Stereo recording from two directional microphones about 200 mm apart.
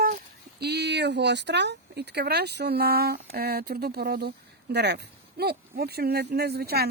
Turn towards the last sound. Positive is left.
turn(degrees=-50)  # may be behind; listen again after turning